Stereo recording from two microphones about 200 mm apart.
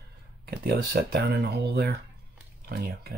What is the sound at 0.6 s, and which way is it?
Speech, 50° right (ahead or behind).